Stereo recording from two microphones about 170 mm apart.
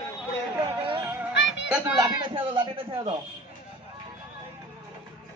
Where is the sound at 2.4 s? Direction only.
30° right (ahead or behind).